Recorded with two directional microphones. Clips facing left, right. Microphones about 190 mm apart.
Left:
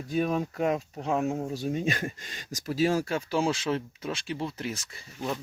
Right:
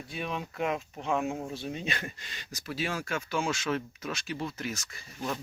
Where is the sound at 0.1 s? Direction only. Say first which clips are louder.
Left 9 dB; 45° left (ahead or behind).